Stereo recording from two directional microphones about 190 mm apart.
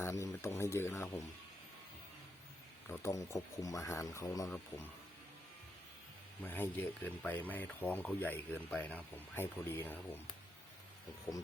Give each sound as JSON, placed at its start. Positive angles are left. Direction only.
{"t": 0.0, "sound": "speech", "side_deg": 15}
{"t": 2.9, "sound": "speech", "side_deg": 15}
{"t": 6.4, "sound": "speech", "side_deg": 10}
{"t": 11.3, "sound": "speech", "side_deg": 15}